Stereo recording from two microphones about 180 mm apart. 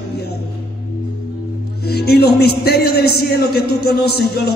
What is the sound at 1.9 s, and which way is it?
A man's voice, 60° left (ahead or behind).